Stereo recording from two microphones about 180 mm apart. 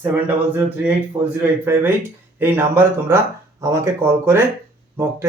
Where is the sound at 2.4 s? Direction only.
10° right (ahead or behind).